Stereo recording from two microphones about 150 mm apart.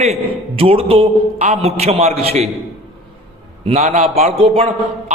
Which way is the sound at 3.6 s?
50° right (ahead or behind).